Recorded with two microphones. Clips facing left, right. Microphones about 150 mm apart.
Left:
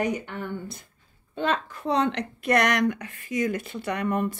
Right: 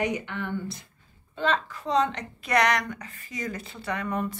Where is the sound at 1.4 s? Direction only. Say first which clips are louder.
Even; 55° left (ahead or behind).